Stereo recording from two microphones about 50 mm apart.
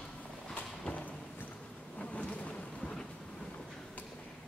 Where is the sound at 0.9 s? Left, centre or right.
Left.